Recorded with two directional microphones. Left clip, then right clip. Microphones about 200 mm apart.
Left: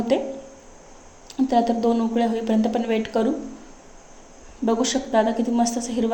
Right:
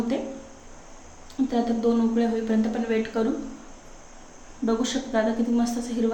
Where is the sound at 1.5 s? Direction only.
30° left (ahead or behind).